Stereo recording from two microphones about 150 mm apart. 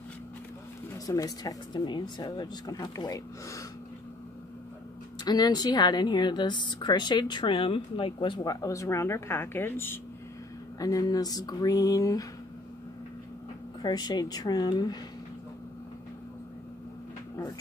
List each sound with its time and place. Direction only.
0.9 s speech: 25° left (ahead or behind)
5.2 s speech: 25° left (ahead or behind)
13.8 s speech: 30° left (ahead or behind)